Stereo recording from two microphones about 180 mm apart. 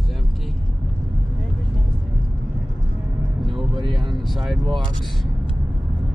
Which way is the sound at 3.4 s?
Centre (ahead or behind).